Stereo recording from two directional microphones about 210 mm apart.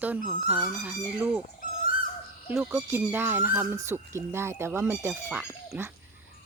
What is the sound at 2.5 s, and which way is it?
Speech, 10° right (ahead or behind).